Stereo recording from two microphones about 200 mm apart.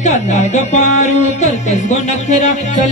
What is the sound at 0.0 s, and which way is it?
Music, 35° left (ahead or behind).